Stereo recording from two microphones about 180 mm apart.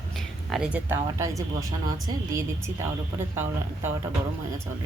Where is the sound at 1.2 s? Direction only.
20° right (ahead or behind).